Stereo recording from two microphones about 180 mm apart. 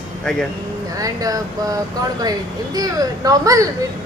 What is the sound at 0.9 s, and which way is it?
A woman's voice, 20° right (ahead or behind).